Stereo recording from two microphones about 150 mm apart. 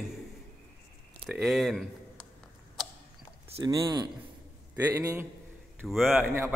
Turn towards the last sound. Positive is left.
turn(degrees=0)  # may be behind; listen again after turning